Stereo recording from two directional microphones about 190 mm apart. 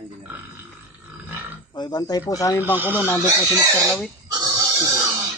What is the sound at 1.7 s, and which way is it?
Speech, 20° left (ahead or behind).